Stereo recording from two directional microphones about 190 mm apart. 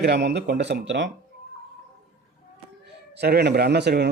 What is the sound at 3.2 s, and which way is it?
Speech, 60° right (ahead or behind).